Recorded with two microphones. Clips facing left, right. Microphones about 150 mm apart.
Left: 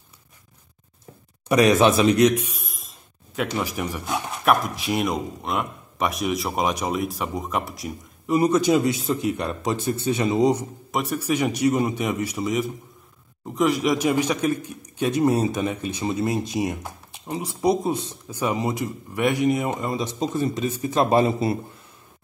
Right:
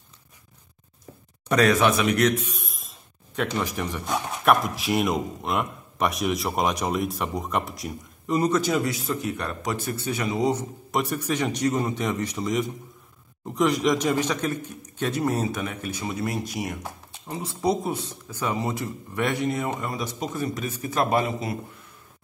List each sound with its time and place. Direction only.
1.5 s speech: 20° left (ahead or behind)
2.2 s a man's voice: 15° left (ahead or behind)
2.6 s speech: centre (ahead or behind)
8.4 s speech: 15° left (ahead or behind)
10.9 s a man's voice: centre (ahead or behind); by 21.5 s 30° left (ahead or behind)